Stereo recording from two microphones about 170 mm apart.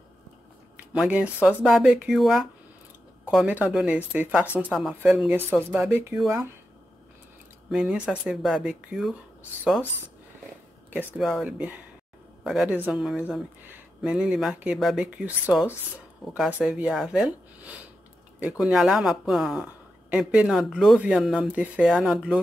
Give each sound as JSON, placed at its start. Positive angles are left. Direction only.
{"t": 0.9, "sound": "speech", "side_deg": -5}
{"t": 7.7, "sound": "speech", "side_deg": -5}
{"t": 11.1, "sound": "speech", "side_deg": 0}